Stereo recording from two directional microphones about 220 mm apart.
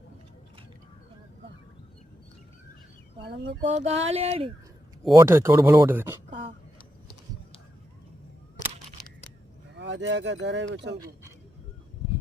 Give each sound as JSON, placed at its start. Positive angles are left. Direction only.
{"t": 3.2, "sound": "speech", "side_deg": -50}
{"t": 3.7, "sound": "a sound", "side_deg": -30}
{"t": 5.1, "sound": "speech", "side_deg": -10}
{"t": 9.7, "sound": "speech", "side_deg": -55}